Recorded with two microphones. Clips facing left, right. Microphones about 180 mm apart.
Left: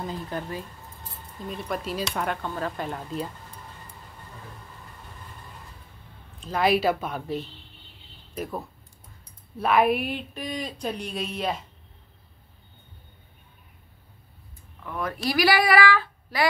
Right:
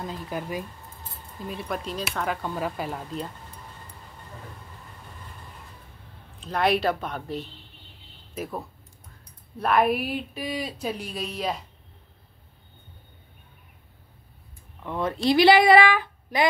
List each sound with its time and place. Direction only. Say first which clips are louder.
0.3 s speech: right 1 dB; 10° right (ahead or behind)
1.5 s speech: left 1 dB; centre (ahead or behind)
2.4 s speech: right 1 dB; 10° right (ahead or behind)
6.4 s speech: left 1 dB; centre (ahead or behind)
14.8 s speech: right 4 dB; 25° right (ahead or behind)